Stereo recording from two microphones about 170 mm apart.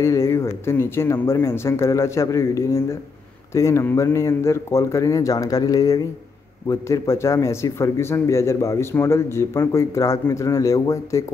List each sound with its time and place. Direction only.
0.0 s speech: 15° left (ahead or behind)